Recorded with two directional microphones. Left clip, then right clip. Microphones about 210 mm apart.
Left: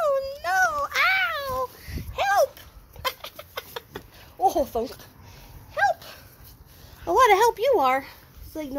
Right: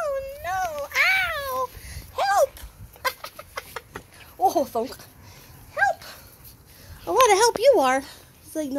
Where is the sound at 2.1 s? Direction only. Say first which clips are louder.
Right 1 dB; 20° right (ahead or behind); by 4.0 s 5° right (ahead or behind).